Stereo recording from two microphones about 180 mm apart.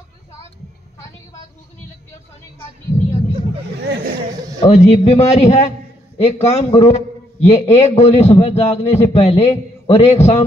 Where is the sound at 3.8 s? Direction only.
65° right (ahead or behind).